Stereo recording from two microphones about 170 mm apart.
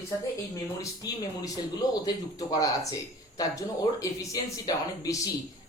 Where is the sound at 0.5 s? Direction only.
20° left (ahead or behind).